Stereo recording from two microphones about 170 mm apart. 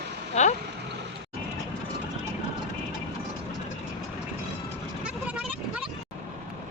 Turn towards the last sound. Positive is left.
turn(degrees=-5)  # may be behind; listen again after turning